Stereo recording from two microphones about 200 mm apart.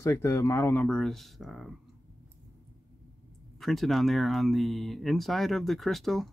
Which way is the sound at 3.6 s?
Centre (ahead or behind).